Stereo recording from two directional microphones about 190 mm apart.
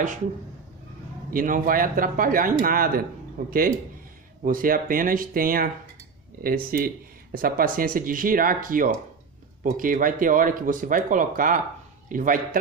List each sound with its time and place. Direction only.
1.3 s speech: 45° right (ahead or behind)